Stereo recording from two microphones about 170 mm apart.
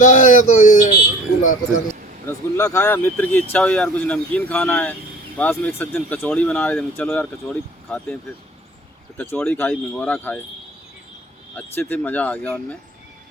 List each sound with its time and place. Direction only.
0.0 s speech: 50° left (ahead or behind)
2.2 s speech: 20° left (ahead or behind)
11.5 s speech: 10° left (ahead or behind)